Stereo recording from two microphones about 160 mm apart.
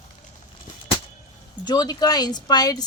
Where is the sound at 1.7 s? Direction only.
25° left (ahead or behind).